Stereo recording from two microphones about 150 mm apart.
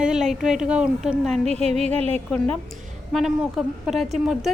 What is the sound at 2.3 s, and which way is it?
A woman's voice, 5° left (ahead or behind).